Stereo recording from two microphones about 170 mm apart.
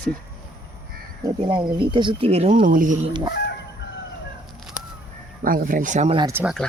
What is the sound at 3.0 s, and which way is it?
Speech, 25° right (ahead or behind).